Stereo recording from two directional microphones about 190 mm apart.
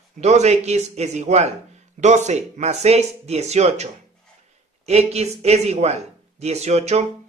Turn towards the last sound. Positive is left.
turn(degrees=-35)  # may be behind; listen again after turning